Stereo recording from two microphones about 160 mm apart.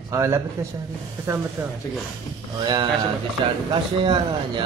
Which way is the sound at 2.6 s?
25° right (ahead or behind).